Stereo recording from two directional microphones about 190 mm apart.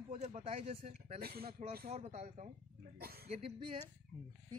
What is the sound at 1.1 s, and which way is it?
Speech, 55° right (ahead or behind).